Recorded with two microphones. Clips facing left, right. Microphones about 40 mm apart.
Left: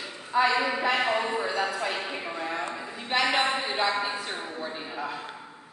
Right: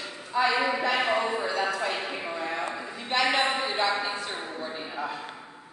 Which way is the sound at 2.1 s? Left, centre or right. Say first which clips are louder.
Right 1 dB; centre.